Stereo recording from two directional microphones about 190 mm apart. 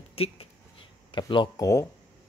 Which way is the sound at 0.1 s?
30° left (ahead or behind).